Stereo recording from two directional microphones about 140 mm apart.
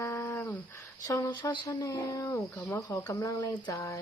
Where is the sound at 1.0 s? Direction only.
25° left (ahead or behind).